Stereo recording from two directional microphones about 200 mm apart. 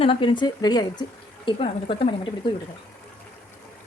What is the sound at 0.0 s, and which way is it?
Speech, 25° left (ahead or behind).